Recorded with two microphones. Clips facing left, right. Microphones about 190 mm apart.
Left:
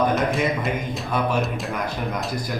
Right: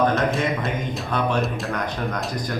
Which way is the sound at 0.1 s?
Centre (ahead or behind).